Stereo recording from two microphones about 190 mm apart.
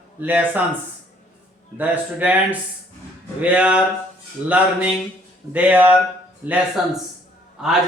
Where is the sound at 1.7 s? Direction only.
10° right (ahead or behind).